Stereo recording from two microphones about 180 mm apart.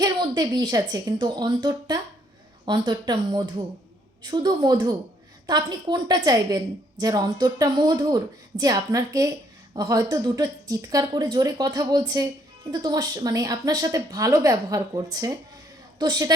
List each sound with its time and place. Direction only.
0.0 s a woman's voice: 25° right (ahead or behind)